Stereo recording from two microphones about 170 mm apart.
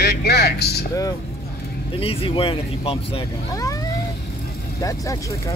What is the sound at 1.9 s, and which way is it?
Speech, 30° left (ahead or behind).